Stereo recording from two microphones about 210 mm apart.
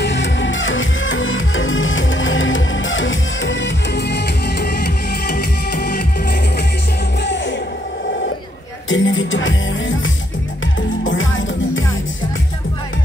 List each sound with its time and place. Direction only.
0.0 s music: 60° left (ahead or behind)
7.2 s music: 60° left (ahead or behind)
8.8 s music: 65° left (ahead or behind)